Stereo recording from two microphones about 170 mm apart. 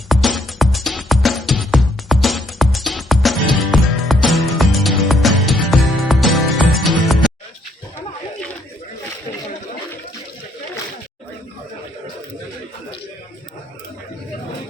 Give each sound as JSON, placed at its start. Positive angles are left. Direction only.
{"t": 0.1, "sound": "music", "side_deg": 0}